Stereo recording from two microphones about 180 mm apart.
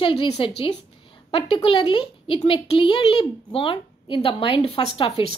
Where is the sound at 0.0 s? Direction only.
30° left (ahead or behind).